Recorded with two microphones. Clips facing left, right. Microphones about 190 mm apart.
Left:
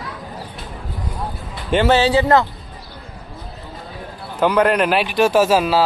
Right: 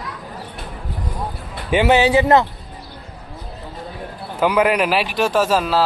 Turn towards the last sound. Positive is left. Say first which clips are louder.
# left 2 dB
turn(degrees=5)  # may be behind; listen again after turning